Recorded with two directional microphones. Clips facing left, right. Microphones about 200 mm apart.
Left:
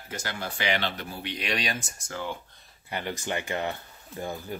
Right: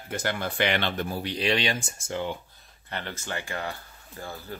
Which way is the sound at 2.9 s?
15° left (ahead or behind).